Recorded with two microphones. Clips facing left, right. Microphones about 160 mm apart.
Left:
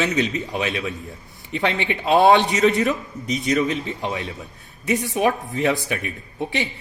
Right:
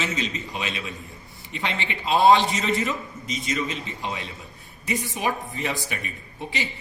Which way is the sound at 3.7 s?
60° left (ahead or behind).